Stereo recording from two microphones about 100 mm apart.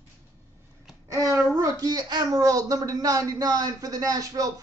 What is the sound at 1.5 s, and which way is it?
Speech, 35° right (ahead or behind).